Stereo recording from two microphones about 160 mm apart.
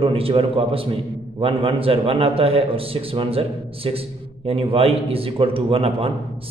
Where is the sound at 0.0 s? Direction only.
35° right (ahead or behind).